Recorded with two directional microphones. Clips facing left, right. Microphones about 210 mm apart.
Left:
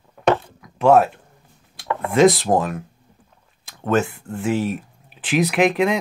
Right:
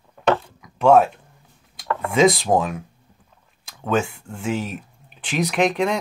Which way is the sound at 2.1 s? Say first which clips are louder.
Left 2 dB; centre (ahead or behind).